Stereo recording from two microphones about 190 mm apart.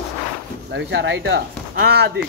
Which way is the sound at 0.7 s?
70° right (ahead or behind).